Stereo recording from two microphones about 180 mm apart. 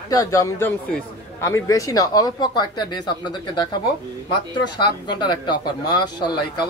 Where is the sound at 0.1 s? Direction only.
20° left (ahead or behind).